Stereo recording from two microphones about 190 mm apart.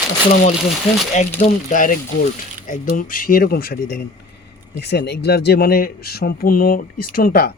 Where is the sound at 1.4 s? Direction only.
35° left (ahead or behind).